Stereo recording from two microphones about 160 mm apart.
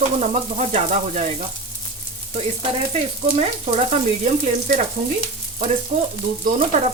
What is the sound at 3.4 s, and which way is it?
Sizzle, 45° right (ahead or behind).